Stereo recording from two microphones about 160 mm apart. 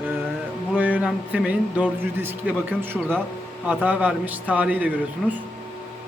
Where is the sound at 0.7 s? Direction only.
10° right (ahead or behind).